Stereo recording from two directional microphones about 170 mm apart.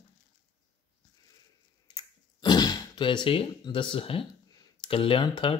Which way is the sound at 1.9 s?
25° left (ahead or behind).